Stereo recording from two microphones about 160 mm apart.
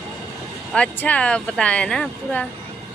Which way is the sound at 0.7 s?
10° left (ahead or behind).